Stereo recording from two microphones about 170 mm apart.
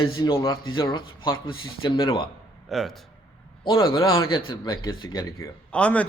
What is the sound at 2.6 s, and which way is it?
Speech, centre (ahead or behind).